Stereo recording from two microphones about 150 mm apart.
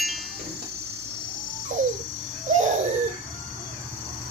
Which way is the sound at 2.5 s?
55° right (ahead or behind).